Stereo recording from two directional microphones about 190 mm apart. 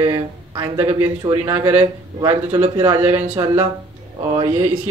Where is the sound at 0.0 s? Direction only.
20° right (ahead or behind).